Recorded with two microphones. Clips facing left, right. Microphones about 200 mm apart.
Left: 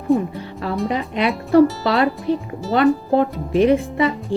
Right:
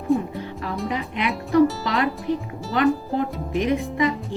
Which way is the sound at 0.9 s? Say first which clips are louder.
Left 4 dB; 35° left (ahead or behind).